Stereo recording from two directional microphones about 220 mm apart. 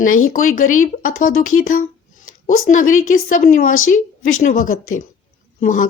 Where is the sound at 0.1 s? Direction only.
70° left (ahead or behind).